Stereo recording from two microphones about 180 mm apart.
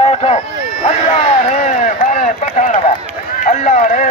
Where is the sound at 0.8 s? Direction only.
40° left (ahead or behind).